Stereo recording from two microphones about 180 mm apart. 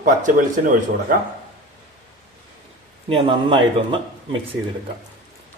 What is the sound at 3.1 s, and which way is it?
Speech, 30° right (ahead or behind).